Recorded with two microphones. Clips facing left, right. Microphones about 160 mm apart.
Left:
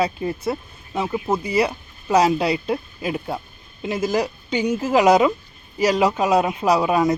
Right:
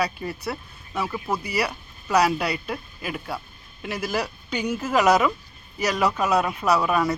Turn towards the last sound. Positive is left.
turn(degrees=15)  # may be behind; listen again after turning